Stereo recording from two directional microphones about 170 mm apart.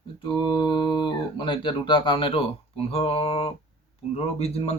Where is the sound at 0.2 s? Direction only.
25° left (ahead or behind).